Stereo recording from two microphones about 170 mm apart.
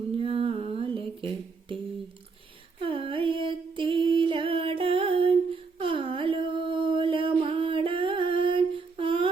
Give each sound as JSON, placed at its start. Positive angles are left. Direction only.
{"t": 0.2, "sound": "music", "side_deg": -35}
{"t": 2.8, "sound": "music", "side_deg": -30}